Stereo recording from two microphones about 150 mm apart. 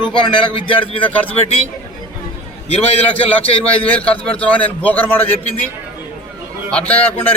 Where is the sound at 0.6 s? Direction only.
35° left (ahead or behind).